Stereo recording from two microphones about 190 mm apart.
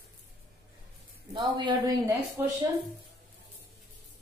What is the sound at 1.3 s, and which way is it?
Speech, 25° right (ahead or behind).